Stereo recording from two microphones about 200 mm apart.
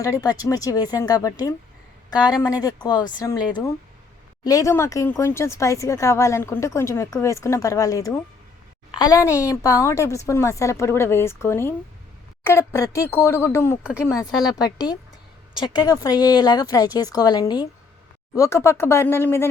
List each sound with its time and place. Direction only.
0.0 s speech: 15° left (ahead or behind)
4.4 s speech: 15° left (ahead or behind)